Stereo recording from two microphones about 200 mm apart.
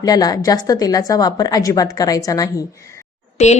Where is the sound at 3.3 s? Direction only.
35° left (ahead or behind).